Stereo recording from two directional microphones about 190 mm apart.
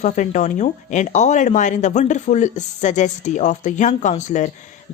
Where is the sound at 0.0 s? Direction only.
40° left (ahead or behind).